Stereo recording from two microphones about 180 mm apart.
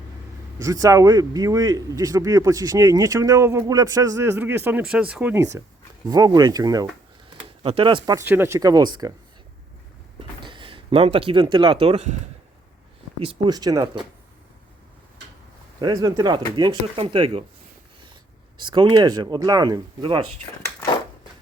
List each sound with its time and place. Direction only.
0.6 s speech: 20° right (ahead or behind)
7.6 s speech: 30° right (ahead or behind)
8.0 s speech: 15° right (ahead or behind)
10.2 s speech: 30° right (ahead or behind)
13.1 s speech: 30° right (ahead or behind)
15.8 s speech: 20° right (ahead or behind)
18.6 s speech: 25° right (ahead or behind)